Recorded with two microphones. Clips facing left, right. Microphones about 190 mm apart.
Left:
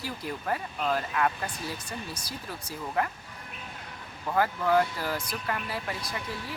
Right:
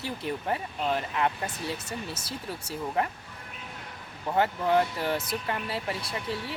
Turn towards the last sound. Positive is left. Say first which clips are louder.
# right 2 dB
turn(degrees=-25)  # may be behind; listen again after turning